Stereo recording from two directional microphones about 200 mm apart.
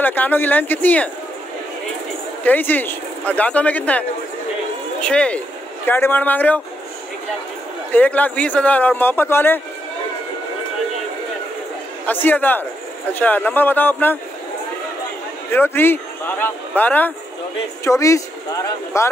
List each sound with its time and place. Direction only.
0.0 s speech: 10° left (ahead or behind)
2.4 s speech: 10° left (ahead or behind)
5.0 s speech: 5° left (ahead or behind)
7.9 s speech: 10° left (ahead or behind)
12.1 s speech: 10° left (ahead or behind)
15.5 s speech: 10° left (ahead or behind)